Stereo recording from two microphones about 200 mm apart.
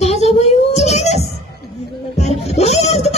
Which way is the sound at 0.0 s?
35° left (ahead or behind).